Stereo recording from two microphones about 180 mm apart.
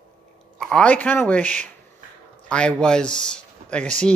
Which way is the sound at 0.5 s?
5° left (ahead or behind).